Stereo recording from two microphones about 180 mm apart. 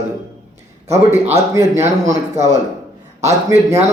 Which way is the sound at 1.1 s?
15° right (ahead or behind).